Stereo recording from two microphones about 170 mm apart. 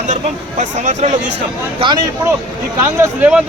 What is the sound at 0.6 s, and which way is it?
Speech, 45° right (ahead or behind).